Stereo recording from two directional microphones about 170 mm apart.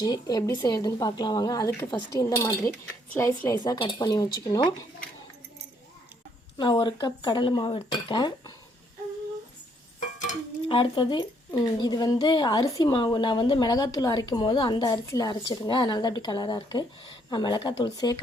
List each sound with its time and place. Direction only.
0.0 s speech: 25° left (ahead or behind)
2.2 s speech: 10° left (ahead or behind)
6.6 s speech: 25° left (ahead or behind)
10.7 s speech: 30° left (ahead or behind)